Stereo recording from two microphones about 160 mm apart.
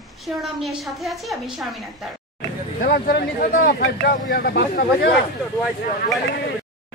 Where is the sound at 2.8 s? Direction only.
75° left (ahead or behind).